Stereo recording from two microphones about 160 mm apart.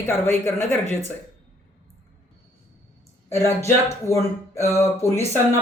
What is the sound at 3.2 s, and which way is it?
Speech, 15° left (ahead or behind).